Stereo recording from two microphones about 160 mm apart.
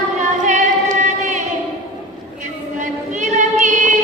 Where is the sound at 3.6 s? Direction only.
50° right (ahead or behind).